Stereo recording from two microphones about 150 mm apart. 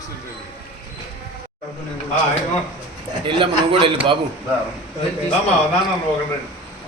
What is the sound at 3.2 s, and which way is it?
Speech, 35° right (ahead or behind).